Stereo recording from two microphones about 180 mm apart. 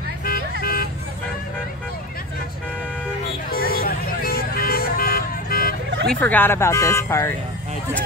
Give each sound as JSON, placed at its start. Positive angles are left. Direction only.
{"t": 0.2, "sound": "vehicle", "side_deg": 55}
{"t": 3.5, "sound": "vehicle", "side_deg": 55}
{"t": 6.0, "sound": "speech", "side_deg": 10}